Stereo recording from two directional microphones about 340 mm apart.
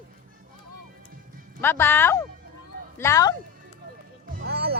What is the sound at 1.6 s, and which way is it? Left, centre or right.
Speech, centre.